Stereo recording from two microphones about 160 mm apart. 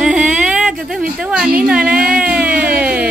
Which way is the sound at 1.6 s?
5° right (ahead or behind).